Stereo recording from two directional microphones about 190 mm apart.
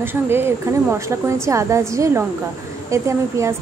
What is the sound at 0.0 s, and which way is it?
Speech, 10° right (ahead or behind).